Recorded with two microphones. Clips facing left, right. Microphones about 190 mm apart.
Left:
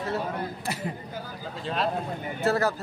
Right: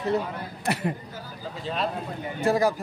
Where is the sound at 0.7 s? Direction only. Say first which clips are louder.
Right 9 dB; 65° right (ahead or behind).